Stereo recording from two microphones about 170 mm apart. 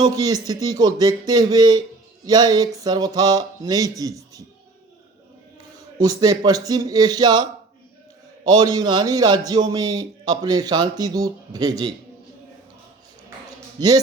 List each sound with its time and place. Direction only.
0.0 s a man's voice: 20° right (ahead or behind)
6.0 s a man's voice: 20° right (ahead or behind)
8.5 s a man's voice: 25° right (ahead or behind)
13.7 s a man's voice: 25° right (ahead or behind)